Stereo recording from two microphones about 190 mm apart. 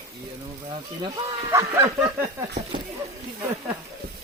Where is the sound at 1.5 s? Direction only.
15° right (ahead or behind).